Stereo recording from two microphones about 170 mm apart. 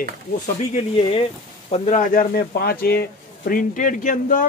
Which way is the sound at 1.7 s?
45° left (ahead or behind).